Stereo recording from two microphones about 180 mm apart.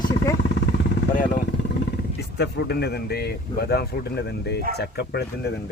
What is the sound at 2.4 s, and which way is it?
Speech, 65° left (ahead or behind).